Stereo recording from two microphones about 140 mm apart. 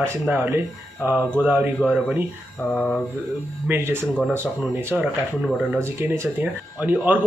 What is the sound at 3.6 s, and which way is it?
Speech, 15° right (ahead or behind).